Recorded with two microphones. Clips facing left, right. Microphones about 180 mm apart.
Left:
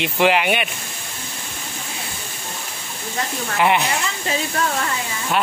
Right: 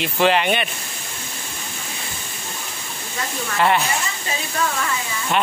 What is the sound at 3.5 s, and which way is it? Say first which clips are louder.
Speech: even; 15° left (ahead or behind).